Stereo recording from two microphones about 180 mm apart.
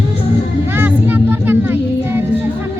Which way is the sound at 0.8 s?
10° right (ahead or behind).